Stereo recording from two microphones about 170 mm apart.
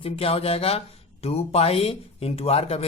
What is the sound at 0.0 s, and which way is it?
Speech, 35° left (ahead or behind).